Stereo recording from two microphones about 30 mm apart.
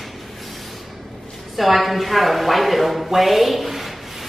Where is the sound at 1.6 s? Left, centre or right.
Centre.